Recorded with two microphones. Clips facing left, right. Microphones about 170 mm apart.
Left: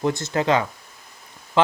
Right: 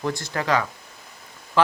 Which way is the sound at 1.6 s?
20° left (ahead or behind).